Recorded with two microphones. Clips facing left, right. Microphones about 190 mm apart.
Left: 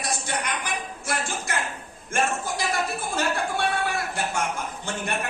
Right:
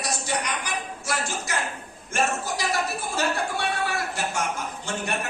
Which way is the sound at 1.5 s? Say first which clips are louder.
Even; 55° left (ahead or behind).